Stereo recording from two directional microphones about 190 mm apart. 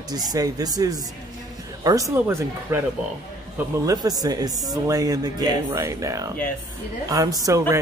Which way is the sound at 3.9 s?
20° right (ahead or behind).